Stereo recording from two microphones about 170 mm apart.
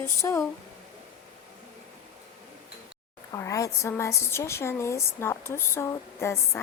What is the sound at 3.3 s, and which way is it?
A woman's voice, 20° left (ahead or behind).